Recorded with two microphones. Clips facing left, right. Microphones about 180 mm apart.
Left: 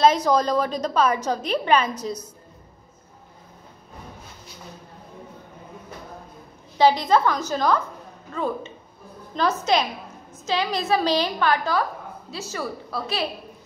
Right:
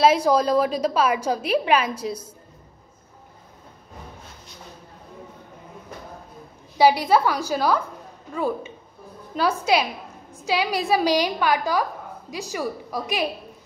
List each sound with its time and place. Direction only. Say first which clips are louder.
0.0 s a woman's voice: right 1 dB; 10° right (ahead or behind)
6.8 s a woman's voice: right 1 dB; 10° right (ahead or behind)